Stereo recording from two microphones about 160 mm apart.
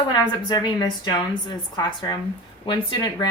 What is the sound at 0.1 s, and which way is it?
Speech, 30° left (ahead or behind).